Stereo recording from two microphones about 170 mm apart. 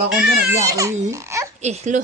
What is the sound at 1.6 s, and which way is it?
Speech, 40° right (ahead or behind).